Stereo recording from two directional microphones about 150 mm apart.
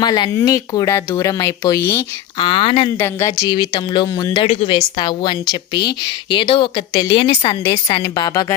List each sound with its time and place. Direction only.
0.0 s speech: 25° left (ahead or behind)
2.4 s a woman's voice: 35° left (ahead or behind)
3.0 s a woman's voice: 20° left (ahead or behind)